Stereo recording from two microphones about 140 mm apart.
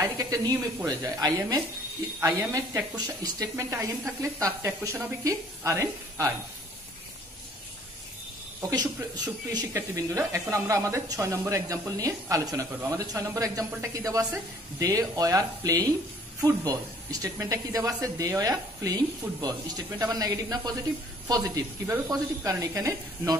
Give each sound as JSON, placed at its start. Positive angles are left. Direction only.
{"t": 0.0, "sound": "speech", "side_deg": -25}
{"t": 3.3, "sound": "speech", "side_deg": -25}
{"t": 8.5, "sound": "speech", "side_deg": -25}